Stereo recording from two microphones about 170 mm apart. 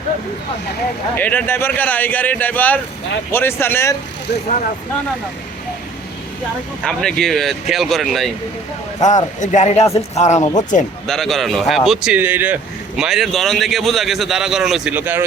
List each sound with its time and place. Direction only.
1.1 s speech: 10° left (ahead or behind)
6.8 s a man's voice: 5° left (ahead or behind)
9.0 s speech: 45° left (ahead or behind)
11.0 s a man's voice: centre (ahead or behind)